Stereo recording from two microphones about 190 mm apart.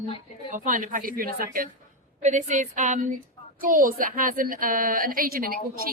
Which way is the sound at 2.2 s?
40° right (ahead or behind).